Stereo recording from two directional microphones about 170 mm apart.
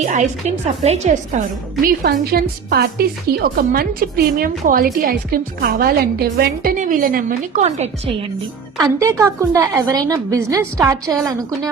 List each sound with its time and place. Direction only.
0.0 s a woman's voice: 45° right (ahead or behind)
1.8 s a woman's voice: 60° right (ahead or behind); by 8.1 s 40° right (ahead or behind)
8.8 s a woman's voice: 15° right (ahead or behind)